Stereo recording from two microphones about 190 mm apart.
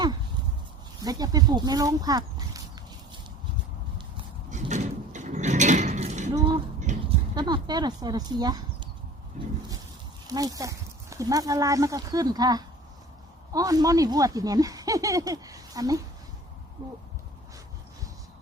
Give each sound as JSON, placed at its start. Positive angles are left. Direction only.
{"t": 1.0, "sound": "speech", "side_deg": -20}
{"t": 4.5, "sound": "mechanisms", "side_deg": -40}
{"t": 6.7, "sound": "a sound", "side_deg": -40}
{"t": 7.3, "sound": "speech", "side_deg": -20}
{"t": 10.2, "sound": "speech", "side_deg": -20}